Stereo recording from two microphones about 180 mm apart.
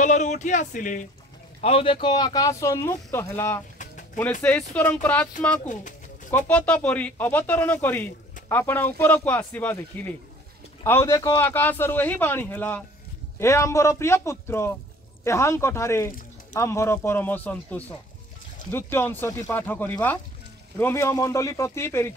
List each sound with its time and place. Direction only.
0.0 s speech: 45° left (ahead or behind)
1.6 s speech: 30° left (ahead or behind); by 3.6 s 15° left (ahead or behind)
3.7 s pigeon: 45° left (ahead or behind)
4.2 s speech: 5° left (ahead or behind)
5.7 s bird: 45° left (ahead or behind)
6.4 s speech: 10° left (ahead or behind)